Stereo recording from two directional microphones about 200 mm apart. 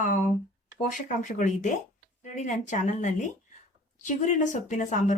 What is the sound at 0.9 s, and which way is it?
Speech, 40° left (ahead or behind).